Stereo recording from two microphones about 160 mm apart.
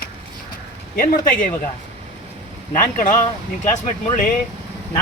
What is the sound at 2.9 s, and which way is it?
Speech, 55° left (ahead or behind).